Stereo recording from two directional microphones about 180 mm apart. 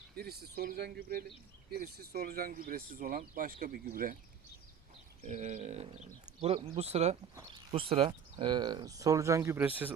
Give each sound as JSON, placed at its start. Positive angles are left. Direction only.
{"t": 0.2, "sound": "speech", "side_deg": -60}
{"t": 5.2, "sound": "speech", "side_deg": -40}